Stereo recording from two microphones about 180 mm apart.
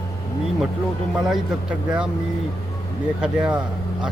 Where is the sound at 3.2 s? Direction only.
5° right (ahead or behind).